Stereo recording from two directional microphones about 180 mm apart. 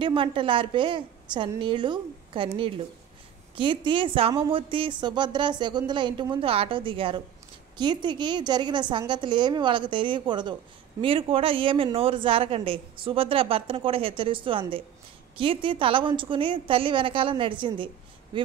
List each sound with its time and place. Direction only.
0.0 s a woman's voice: 30° right (ahead or behind)